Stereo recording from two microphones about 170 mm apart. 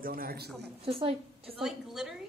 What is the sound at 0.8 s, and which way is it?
Speech, 35° right (ahead or behind).